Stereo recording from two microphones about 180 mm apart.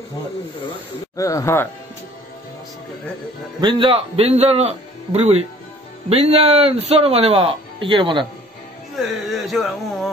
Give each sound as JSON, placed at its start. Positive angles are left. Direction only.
{"t": 1.1, "sound": "speech", "side_deg": 20}
{"t": 3.6, "sound": "speech", "side_deg": -30}
{"t": 8.9, "sound": "speech", "side_deg": 0}